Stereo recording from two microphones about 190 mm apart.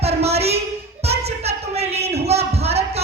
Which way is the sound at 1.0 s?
35° right (ahead or behind).